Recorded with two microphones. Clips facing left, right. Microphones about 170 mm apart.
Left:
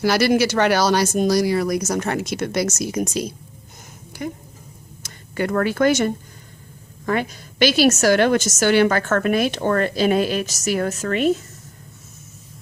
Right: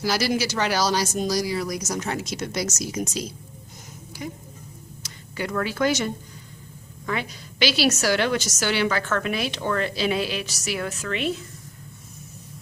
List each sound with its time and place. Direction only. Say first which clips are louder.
0.0 s a woman's voice: left 7 dB; 60° left (ahead or behind)